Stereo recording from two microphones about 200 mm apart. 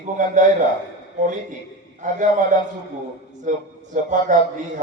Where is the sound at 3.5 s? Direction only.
40° right (ahead or behind).